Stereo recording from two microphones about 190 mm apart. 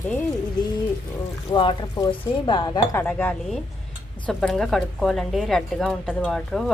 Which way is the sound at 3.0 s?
5° left (ahead or behind).